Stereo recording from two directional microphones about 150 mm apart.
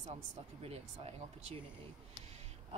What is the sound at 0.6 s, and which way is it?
Speech, 45° right (ahead or behind).